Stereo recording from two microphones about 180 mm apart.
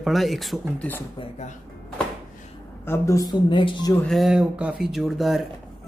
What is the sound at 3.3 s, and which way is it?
Speech, 25° left (ahead or behind).